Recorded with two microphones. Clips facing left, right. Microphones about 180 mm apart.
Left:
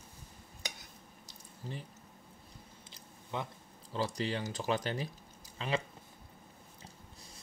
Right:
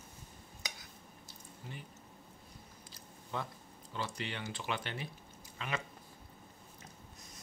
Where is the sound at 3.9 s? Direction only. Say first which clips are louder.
Left 6 dB; 35° left (ahead or behind).